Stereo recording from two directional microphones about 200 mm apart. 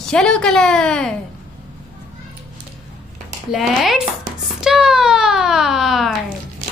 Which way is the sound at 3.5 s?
Centre (ahead or behind).